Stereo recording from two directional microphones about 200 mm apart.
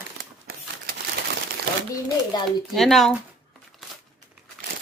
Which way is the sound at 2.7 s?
Centre (ahead or behind).